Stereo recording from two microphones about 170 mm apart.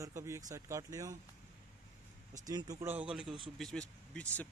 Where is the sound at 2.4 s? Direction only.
20° right (ahead or behind).